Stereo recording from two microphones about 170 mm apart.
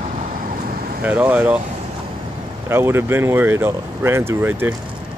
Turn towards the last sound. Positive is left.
turn(degrees=-10)  # may be behind; listen again after turning